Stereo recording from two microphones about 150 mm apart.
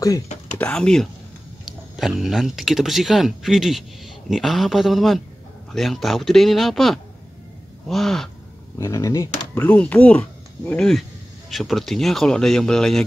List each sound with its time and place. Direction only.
0.6 s speech: 5° left (ahead or behind)
8.7 s speech: 20° left (ahead or behind)
9.6 s speech: 10° left (ahead or behind)